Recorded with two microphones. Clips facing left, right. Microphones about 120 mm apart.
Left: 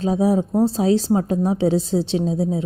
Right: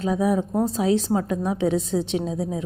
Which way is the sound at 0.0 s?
30° left (ahead or behind).